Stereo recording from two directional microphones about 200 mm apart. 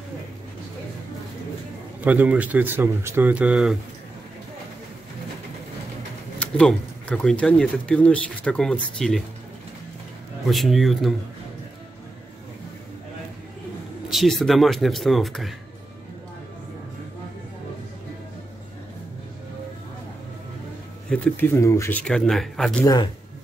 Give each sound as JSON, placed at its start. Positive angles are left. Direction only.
{"t": 2.0, "sound": "speech", "side_deg": -10}
{"t": 6.4, "sound": "speech", "side_deg": 5}
{"t": 10.4, "sound": "speech", "side_deg": 0}
{"t": 14.1, "sound": "speech", "side_deg": 0}
{"t": 21.1, "sound": "speech", "side_deg": 10}